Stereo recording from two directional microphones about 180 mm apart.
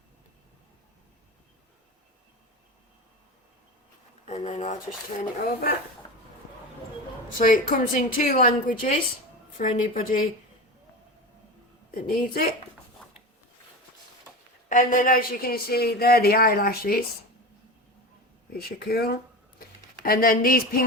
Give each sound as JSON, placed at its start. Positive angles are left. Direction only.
{"t": 4.3, "sound": "a woman's voice", "side_deg": 40}
{"t": 7.3, "sound": "a woman's voice", "side_deg": 50}
{"t": 12.0, "sound": "speech", "side_deg": 55}
{"t": 14.7, "sound": "speech", "side_deg": 45}
{"t": 18.5, "sound": "speech", "side_deg": 60}